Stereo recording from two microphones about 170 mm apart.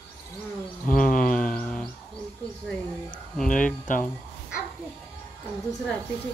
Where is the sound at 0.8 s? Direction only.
55° left (ahead or behind).